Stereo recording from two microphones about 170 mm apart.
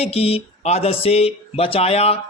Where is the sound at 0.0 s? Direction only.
35° left (ahead or behind).